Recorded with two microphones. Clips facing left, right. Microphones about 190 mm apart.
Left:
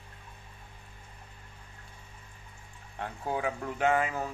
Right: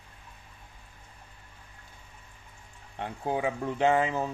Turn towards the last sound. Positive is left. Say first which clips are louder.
# right 3 dB
turn(degrees=-25)  # may be behind; listen again after turning